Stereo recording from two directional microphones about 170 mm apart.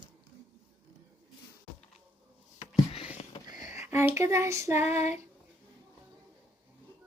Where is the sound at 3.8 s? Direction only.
15° right (ahead or behind).